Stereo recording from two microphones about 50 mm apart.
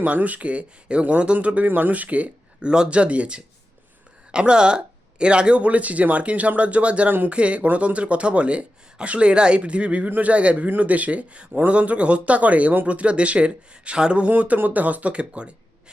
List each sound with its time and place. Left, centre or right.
0.0 s speech: right
14.3 s speech: right